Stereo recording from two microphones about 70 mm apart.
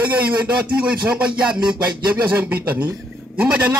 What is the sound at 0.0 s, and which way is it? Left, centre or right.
A man's voice, right.